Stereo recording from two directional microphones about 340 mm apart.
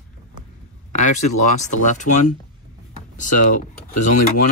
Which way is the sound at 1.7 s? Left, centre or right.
Left.